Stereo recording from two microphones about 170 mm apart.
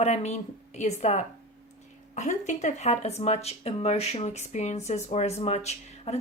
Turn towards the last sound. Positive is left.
turn(degrees=40)  # may be behind; listen again after turning